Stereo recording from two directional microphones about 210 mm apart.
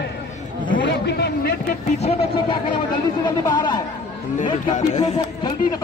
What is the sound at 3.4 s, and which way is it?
Speech, 20° left (ahead or behind).